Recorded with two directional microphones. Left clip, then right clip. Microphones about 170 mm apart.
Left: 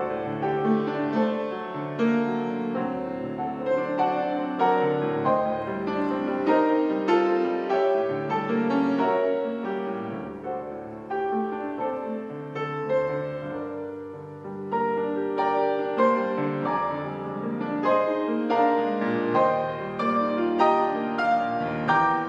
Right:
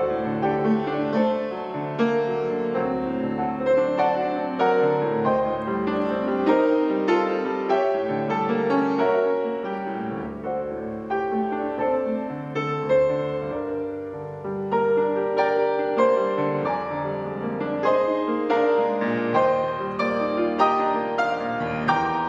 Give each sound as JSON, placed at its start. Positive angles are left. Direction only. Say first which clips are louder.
{"t": 0.4, "sound": "music", "louder": "even", "side_deg": -30}
{"t": 15.3, "sound": "music", "louder": "right 1 dB", "side_deg": -30}
{"t": 17.8, "sound": "music", "louder": "right 2 dB", "side_deg": -30}